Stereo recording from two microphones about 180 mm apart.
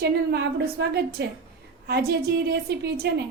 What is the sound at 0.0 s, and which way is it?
A woman's voice, 65° right (ahead or behind).